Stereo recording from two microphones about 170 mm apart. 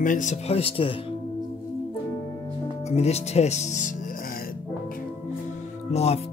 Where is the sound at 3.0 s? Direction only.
40° left (ahead or behind).